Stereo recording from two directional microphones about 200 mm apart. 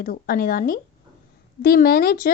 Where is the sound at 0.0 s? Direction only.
50° left (ahead or behind).